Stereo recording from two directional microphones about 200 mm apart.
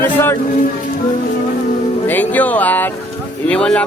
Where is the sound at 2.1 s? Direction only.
10° left (ahead or behind).